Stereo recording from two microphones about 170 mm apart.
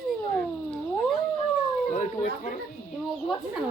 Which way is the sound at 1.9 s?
50° left (ahead or behind).